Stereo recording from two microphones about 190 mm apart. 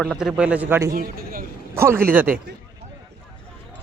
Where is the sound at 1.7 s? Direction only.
15° right (ahead or behind).